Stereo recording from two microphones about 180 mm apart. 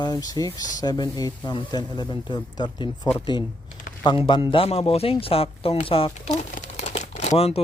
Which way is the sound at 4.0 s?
25° left (ahead or behind).